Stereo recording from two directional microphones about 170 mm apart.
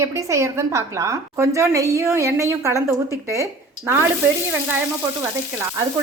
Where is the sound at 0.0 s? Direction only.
15° right (ahead or behind).